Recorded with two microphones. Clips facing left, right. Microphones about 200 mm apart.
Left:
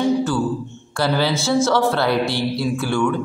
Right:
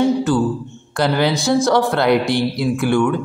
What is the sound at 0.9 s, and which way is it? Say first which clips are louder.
A woman's voice: right 2 dB; 20° right (ahead or behind).